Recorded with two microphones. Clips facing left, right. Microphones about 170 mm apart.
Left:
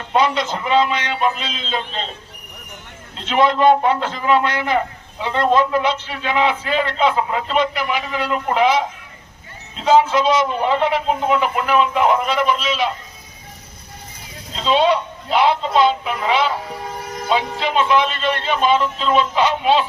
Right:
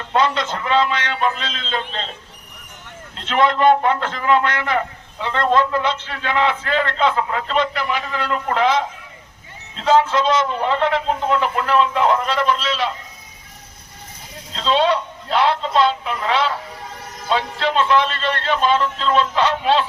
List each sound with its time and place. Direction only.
0.1 s a man's voice: 15° left (ahead or behind)
3.2 s a man's voice: 15° left (ahead or behind)
14.5 s a man's voice: 10° left (ahead or behind)